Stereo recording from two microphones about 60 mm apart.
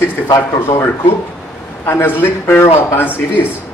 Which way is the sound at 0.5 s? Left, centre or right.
Left.